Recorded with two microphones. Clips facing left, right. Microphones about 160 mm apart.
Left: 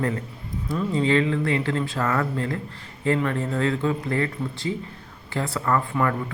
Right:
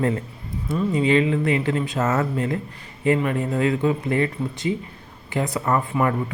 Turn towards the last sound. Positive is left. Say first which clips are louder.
# right 2 dB
turn(degrees=-20)  # may be behind; listen again after turning